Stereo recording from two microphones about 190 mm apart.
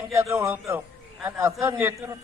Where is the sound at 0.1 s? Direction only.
15° right (ahead or behind).